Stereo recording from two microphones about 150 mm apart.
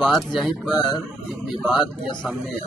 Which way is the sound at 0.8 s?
30° left (ahead or behind).